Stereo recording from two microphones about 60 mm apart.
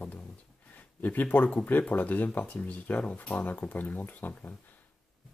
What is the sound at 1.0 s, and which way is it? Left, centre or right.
Speech, left.